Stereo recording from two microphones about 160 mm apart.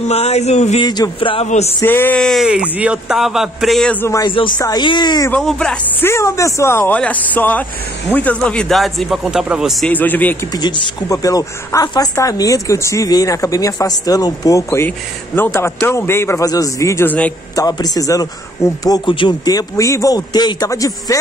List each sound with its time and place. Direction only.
0.0 s a sound: 40° left (ahead or behind)
0.8 s a woman's voice: 25° left (ahead or behind)
1.8 s speech: 15° left (ahead or behind)
4.1 s a woman's voice: 30° left (ahead or behind)
5.3 s speech: 5° left (ahead or behind)
9.9 s speech: 10° left (ahead or behind)
10.5 s a woman's voice: 25° left (ahead or behind)
17.6 s a woman's voice: 25° left (ahead or behind)